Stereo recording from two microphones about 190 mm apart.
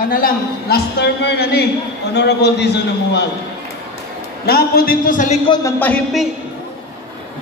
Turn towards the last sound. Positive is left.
turn(degrees=10)  # may be behind; listen again after turning